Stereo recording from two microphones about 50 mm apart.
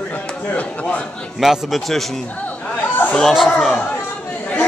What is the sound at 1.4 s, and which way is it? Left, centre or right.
Speech, centre.